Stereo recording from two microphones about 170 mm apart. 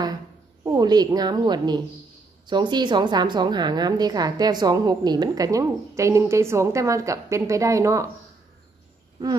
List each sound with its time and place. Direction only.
0.7 s a woman's voice: 25° right (ahead or behind)